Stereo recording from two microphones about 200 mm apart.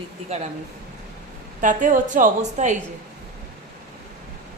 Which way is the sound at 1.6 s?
40° right (ahead or behind).